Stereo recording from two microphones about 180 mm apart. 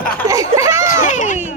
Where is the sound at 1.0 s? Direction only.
45° left (ahead or behind).